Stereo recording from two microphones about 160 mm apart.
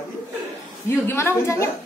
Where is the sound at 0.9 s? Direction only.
15° left (ahead or behind).